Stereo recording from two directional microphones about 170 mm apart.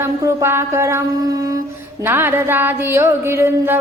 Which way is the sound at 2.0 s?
15° right (ahead or behind).